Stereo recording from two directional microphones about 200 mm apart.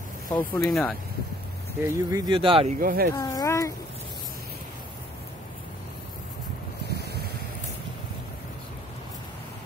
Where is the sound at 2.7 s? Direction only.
45° right (ahead or behind).